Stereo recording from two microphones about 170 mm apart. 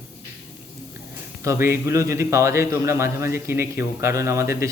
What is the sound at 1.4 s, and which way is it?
A man's voice, 15° right (ahead or behind).